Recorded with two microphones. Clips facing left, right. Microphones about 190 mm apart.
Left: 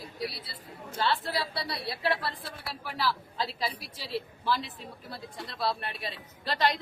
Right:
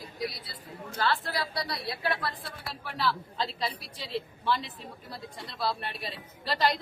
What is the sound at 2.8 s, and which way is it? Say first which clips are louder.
A woman's voice: right 1 dB; centre (ahead or behind).